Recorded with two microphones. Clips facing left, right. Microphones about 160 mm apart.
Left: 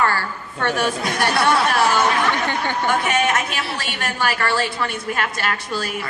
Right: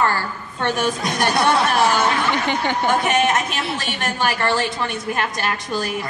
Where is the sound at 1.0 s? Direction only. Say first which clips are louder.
Right 2 dB; 20° right (ahead or behind).